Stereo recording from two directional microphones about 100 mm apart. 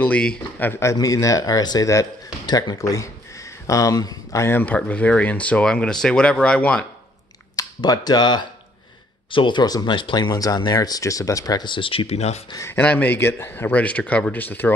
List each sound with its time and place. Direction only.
0.0 s speech: 10° left (ahead or behind)
0.7 s a man's voice: 25° left (ahead or behind)
0.9 s speech: 35° left (ahead or behind)
2.4 s speech: 45° left (ahead or behind); by 6.9 s 10° left (ahead or behind)
7.5 s speech: 40° left (ahead or behind); by 12.4 s 90° left
12.5 s a man's voice: 25° left (ahead or behind)
12.8 s speech: 15° left (ahead or behind)